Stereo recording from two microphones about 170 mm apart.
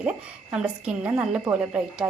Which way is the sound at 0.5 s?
5° right (ahead or behind).